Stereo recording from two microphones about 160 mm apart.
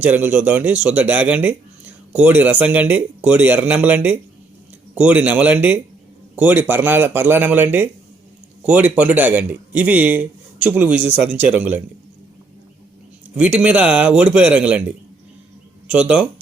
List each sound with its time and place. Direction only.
0.0 s speech: 10° right (ahead or behind)
13.3 s speech: 5° right (ahead or behind)